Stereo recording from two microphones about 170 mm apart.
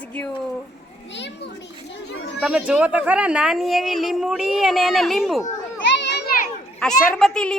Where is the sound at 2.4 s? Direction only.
5° right (ahead or behind).